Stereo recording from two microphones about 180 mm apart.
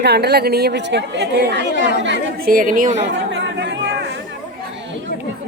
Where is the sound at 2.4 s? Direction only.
50° right (ahead or behind).